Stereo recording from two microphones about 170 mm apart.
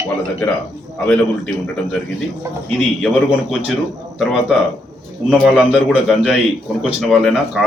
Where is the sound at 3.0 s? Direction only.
Centre (ahead or behind).